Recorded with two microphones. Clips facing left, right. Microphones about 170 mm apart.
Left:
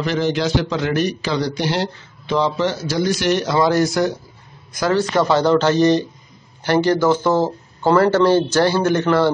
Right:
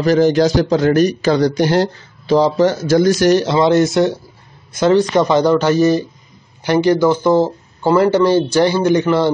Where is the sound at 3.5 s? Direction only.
25° right (ahead or behind).